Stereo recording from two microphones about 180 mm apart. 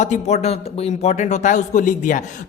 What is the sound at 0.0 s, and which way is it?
A man's voice, 40° left (ahead or behind).